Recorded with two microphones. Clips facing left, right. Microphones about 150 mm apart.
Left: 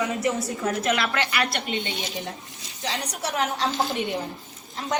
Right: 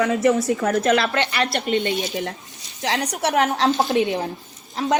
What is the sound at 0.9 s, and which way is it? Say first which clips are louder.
Speech: right 5 dB; 30° right (ahead or behind).